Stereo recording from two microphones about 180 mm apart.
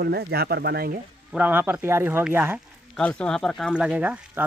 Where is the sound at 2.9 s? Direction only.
5° left (ahead or behind).